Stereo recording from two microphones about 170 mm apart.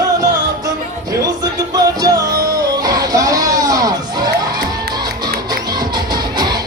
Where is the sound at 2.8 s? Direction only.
20° right (ahead or behind).